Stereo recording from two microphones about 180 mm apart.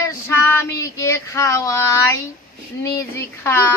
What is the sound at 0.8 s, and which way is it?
Child singing, 20° left (ahead or behind).